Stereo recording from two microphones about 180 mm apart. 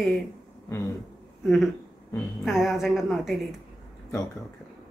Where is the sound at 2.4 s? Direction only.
Centre (ahead or behind).